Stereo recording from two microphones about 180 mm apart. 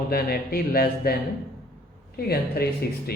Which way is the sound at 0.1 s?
55° left (ahead or behind).